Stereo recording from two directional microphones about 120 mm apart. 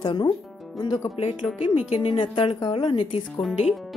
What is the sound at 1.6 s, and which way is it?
A woman's voice, 55° left (ahead or behind).